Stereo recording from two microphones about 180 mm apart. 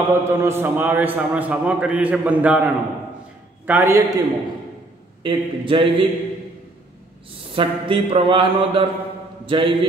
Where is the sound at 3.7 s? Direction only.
15° right (ahead or behind).